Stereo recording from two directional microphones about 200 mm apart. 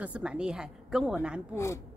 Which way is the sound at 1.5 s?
15° left (ahead or behind).